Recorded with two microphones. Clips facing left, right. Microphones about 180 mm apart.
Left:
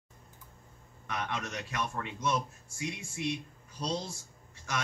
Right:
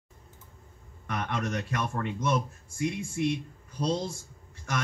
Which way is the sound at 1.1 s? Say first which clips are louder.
Right 5 dB; 55° right (ahead or behind).